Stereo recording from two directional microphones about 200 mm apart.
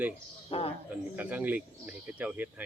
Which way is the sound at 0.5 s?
30° left (ahead or behind).